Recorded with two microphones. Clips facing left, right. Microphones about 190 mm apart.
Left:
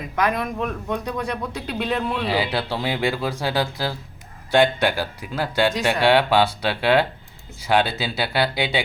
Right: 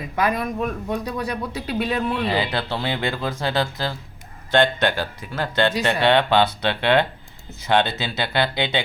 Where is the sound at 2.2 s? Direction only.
10° left (ahead or behind).